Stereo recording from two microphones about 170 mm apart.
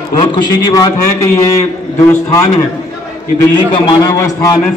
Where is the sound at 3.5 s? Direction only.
25° left (ahead or behind).